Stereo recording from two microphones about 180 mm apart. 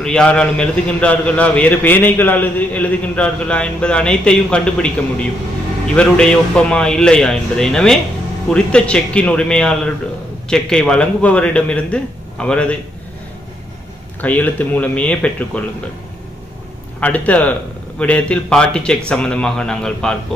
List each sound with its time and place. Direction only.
0.0 s a man's voice: 5° left (ahead or behind)
5.9 s a man's voice: 5° left (ahead or behind)
14.2 s a man's voice: 10° left (ahead or behind)
17.0 s a man's voice: 10° left (ahead or behind)